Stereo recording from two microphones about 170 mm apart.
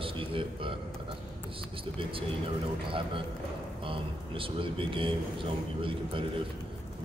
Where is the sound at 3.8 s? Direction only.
30° right (ahead or behind).